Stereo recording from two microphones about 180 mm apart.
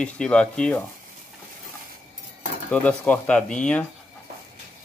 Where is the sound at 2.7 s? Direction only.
5° left (ahead or behind).